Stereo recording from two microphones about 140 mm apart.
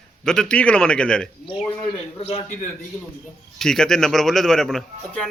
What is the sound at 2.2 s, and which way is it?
Speech, 45° left (ahead or behind).